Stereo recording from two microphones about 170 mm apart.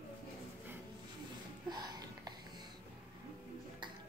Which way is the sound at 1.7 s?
25° right (ahead or behind).